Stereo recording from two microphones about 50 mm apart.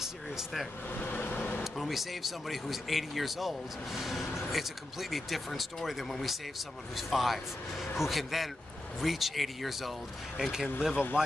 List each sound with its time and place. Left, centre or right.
0.9 s vehicle: left
1.6 s speech: centre
10.8 s speech: centre